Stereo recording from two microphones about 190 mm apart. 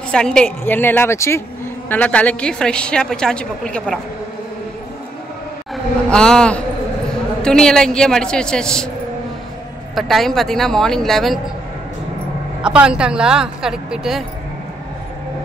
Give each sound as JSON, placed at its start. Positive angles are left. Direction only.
{"t": 0.1, "sound": "a woman's voice", "side_deg": 5}
{"t": 6.0, "sound": "a woman's voice", "side_deg": 5}
{"t": 9.9, "sound": "a woman's voice", "side_deg": 0}
{"t": 12.6, "sound": "a woman's voice", "side_deg": -5}